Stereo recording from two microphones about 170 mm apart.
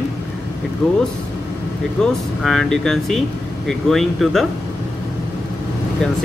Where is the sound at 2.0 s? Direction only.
5° left (ahead or behind).